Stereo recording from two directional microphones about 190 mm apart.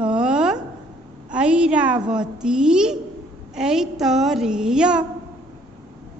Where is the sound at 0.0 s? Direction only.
5° right (ahead or behind).